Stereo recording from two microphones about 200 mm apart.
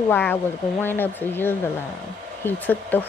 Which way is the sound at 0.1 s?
10° left (ahead or behind).